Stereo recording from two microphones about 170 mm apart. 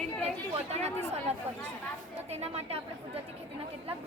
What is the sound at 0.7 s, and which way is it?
Chatter, 40° right (ahead or behind).